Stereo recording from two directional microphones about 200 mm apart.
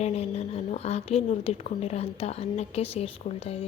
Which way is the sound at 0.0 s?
30° left (ahead or behind).